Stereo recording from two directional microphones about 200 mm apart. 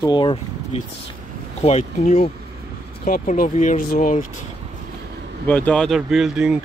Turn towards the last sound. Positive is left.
turn(degrees=-5)  # may be behind; listen again after turning